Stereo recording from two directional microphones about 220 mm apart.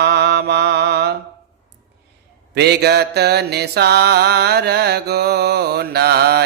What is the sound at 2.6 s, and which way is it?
Mantra, 50° right (ahead or behind).